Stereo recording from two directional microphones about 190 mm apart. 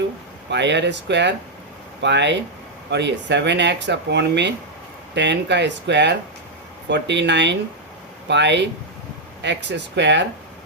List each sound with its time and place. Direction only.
0.5 s speech: 65° right (ahead or behind)